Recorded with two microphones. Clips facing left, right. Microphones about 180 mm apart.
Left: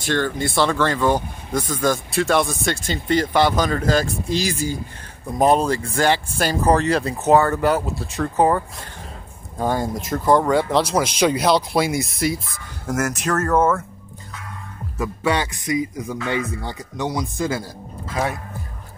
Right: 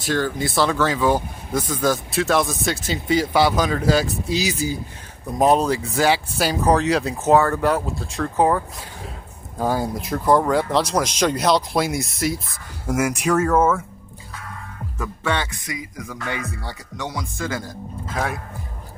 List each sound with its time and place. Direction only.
0.0 s speech: 5° right (ahead or behind)
15.0 s speech: 10° left (ahead or behind)
18.1 s speech: centre (ahead or behind)